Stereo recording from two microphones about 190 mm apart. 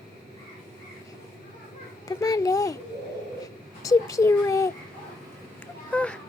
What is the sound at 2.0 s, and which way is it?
Speech, 20° left (ahead or behind).